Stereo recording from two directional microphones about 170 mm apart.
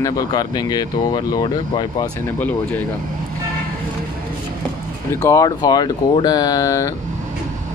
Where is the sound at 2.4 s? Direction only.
10° left (ahead or behind).